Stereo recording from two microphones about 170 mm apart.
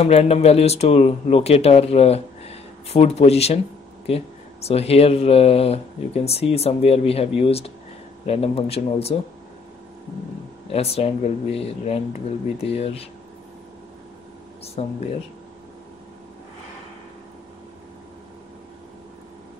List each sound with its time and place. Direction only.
0.0 s speech: 40° left (ahead or behind)
10.7 s speech: 35° left (ahead or behind)
14.6 s speech: 40° left (ahead or behind)